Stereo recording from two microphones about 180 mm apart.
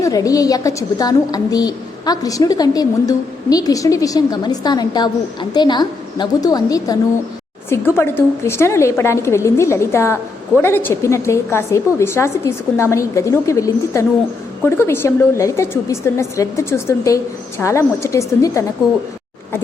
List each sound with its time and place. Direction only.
0.0 s a woman's voice: 20° left (ahead or behind)
7.9 s a woman's voice: 15° left (ahead or behind)